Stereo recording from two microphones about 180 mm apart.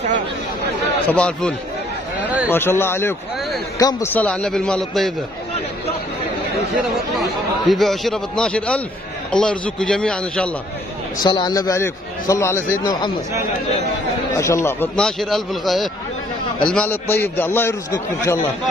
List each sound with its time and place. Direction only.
1.0 s a man's voice: 5° left (ahead or behind)
2.2 s a sound: 5° right (ahead or behind)
2.5 s a man's voice: 10° left (ahead or behind)
7.2 s a man's voice: centre (ahead or behind)
11.2 s a man's voice: 25° left (ahead or behind)
14.3 s a man's voice: 15° left (ahead or behind)